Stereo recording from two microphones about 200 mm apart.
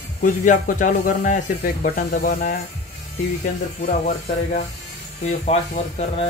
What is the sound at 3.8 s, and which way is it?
Speech, 40° left (ahead or behind).